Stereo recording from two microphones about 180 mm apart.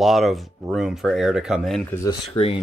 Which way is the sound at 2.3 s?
30° left (ahead or behind).